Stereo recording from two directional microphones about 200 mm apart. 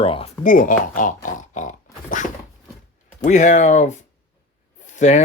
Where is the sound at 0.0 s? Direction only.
25° left (ahead or behind).